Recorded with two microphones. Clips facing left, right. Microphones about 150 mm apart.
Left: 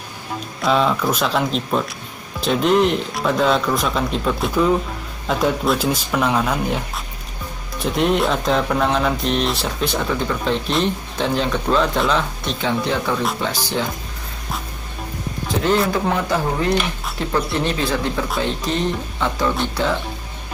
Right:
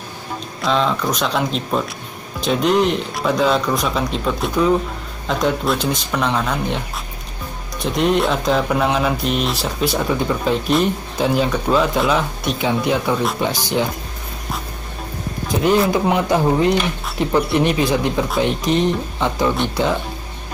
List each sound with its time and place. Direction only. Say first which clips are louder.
0.6 s mantra: left 1 dB; 5° left (ahead or behind)
7.8 s mantra: right 1 dB; centre (ahead or behind)
10.7 s speech: right 3 dB; 10° right (ahead or behind)
15.9 s speech: right 3 dB; 15° right (ahead or behind)